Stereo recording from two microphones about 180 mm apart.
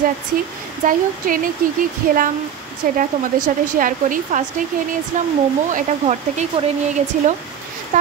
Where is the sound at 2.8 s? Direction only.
50° right (ahead or behind).